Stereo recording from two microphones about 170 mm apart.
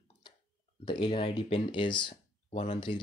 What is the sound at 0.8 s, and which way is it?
Speech, 30° left (ahead or behind).